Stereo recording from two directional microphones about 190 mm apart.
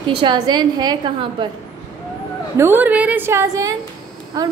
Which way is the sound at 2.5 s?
10° right (ahead or behind).